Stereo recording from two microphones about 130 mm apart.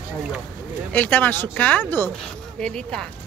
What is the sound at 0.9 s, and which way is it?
Speech, 15° left (ahead or behind).